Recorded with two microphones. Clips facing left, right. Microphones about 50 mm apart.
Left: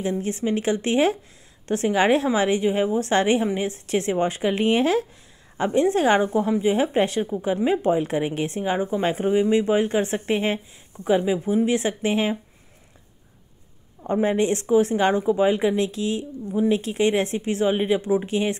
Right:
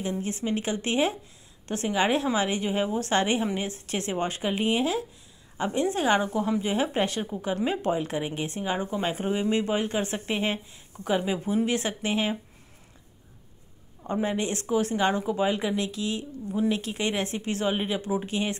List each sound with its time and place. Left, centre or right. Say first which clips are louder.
0.2 s a woman's voice: left 5 dB; left
4.1 s speech: left 5 dB; left
4.6 s speech: left 6 dB; left
5.6 s a woman's voice: left 6 dB; left
8.0 s speech: left 6 dB; left; by 11.7 s centre
11.7 s speech: left 5 dB; left
14.0 s speech: left 7 dB; left
16.5 s speech: left 6 dB; left